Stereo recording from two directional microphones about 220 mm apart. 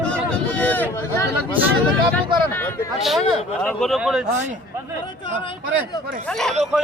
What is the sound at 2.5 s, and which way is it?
A man's voice, 10° left (ahead or behind).